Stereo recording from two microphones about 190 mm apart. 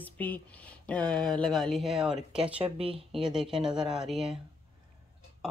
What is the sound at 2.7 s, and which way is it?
Speech, 30° right (ahead or behind).